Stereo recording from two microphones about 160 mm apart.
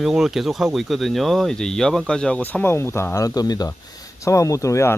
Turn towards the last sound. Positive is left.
turn(degrees=20)  # may be behind; listen again after turning